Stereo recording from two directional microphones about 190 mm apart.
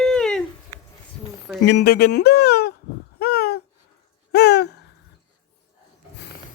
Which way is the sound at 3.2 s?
55° left (ahead or behind).